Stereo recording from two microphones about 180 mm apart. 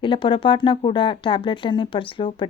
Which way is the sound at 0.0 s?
30° left (ahead or behind).